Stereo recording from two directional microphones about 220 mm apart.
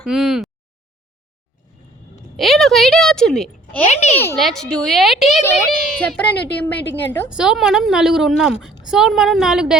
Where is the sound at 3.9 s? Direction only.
30° left (ahead or behind).